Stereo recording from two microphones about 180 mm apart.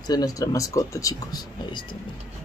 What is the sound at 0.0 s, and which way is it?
Speech, 20° left (ahead or behind).